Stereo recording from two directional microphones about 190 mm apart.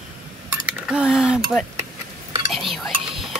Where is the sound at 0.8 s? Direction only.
5° right (ahead or behind).